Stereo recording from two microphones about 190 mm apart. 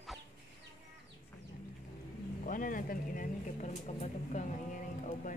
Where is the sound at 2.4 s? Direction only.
45° left (ahead or behind).